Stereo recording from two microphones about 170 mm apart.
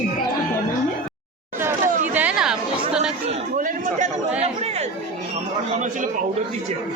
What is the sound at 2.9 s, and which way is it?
Chatter, 5° right (ahead or behind).